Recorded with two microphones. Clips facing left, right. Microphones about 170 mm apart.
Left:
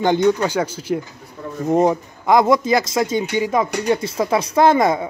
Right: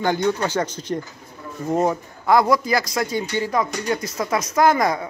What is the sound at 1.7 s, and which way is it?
Speech, 20° left (ahead or behind).